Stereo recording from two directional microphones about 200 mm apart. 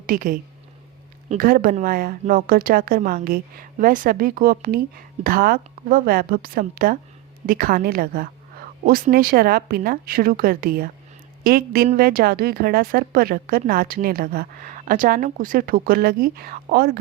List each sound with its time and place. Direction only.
0.0 s a woman's voice: 45° right (ahead or behind)